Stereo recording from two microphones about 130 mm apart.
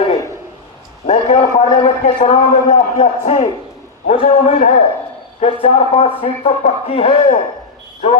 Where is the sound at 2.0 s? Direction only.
75° left (ahead or behind).